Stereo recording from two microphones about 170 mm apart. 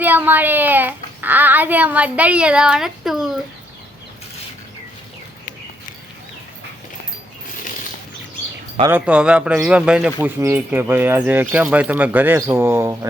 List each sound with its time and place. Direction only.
0.0 s a child's voice: 10° right (ahead or behind)
8.9 s speech: 10° right (ahead or behind)